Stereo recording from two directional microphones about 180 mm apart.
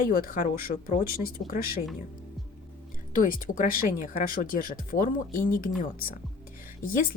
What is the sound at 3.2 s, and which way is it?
Speech, 50° left (ahead or behind).